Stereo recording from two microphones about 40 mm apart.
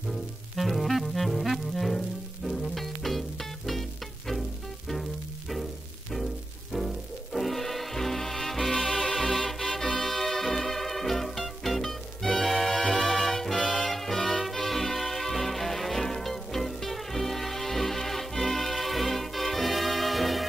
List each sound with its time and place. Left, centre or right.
0.6 s music: centre
6.7 s music: centre
13.6 s music: left
13.8 s music: centre